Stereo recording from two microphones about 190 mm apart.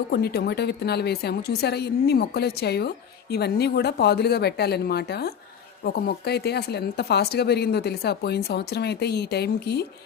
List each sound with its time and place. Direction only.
0.1 s a woman's voice: 55° left (ahead or behind)